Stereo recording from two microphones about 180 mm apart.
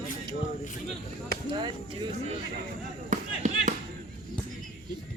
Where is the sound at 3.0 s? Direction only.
45° right (ahead or behind).